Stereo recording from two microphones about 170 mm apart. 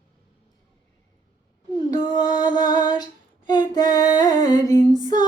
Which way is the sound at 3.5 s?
25° left (ahead or behind).